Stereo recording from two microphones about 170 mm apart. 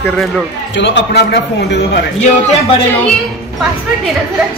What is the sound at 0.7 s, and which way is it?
A man's voice, 90° left.